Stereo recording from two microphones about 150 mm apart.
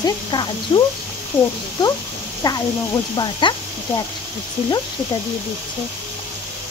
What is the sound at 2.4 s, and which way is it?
Speech, 25° left (ahead or behind).